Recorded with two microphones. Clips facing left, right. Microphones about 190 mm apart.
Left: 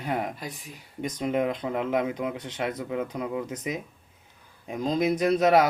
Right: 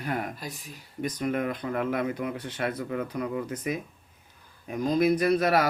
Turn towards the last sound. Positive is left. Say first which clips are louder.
# left 2 dB
turn(degrees=20)  # may be behind; listen again after turning